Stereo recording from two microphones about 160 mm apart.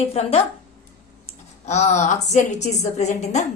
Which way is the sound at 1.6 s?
45° left (ahead or behind).